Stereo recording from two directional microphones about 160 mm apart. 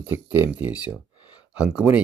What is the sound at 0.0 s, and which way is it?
Speech, 10° right (ahead or behind).